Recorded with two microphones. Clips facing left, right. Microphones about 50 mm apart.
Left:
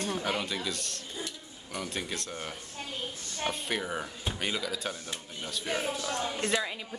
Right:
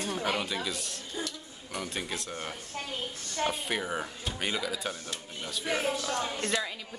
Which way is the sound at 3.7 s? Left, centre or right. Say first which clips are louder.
Right 1 dB; centre.